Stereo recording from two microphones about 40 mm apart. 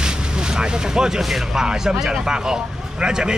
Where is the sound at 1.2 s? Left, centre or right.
Centre.